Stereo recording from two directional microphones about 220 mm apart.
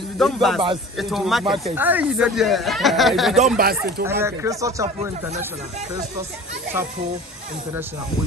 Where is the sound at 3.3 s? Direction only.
35° right (ahead or behind).